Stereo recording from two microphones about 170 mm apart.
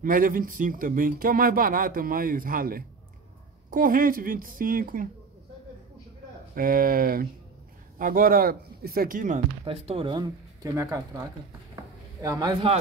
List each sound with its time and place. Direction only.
0.0 s speech: 55° right (ahead or behind)
6.5 s speech: 60° right (ahead or behind)
9.7 s speech: 35° right (ahead or behind); by 11.2 s 20° right (ahead or behind)
11.7 s a sound: 20° right (ahead or behind)